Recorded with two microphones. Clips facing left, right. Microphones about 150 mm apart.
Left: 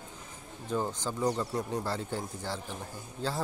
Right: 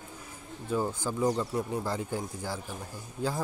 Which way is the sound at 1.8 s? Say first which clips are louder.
Right 2 dB; 15° right (ahead or behind).